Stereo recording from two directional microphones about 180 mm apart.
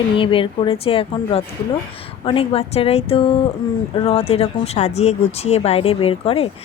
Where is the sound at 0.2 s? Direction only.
30° left (ahead or behind).